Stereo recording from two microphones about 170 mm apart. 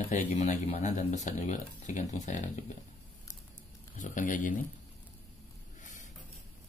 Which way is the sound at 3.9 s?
50° left (ahead or behind).